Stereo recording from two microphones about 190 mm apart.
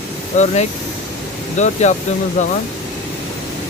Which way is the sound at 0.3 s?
35° left (ahead or behind).